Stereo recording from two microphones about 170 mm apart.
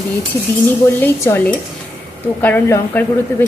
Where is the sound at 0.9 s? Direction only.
15° left (ahead or behind).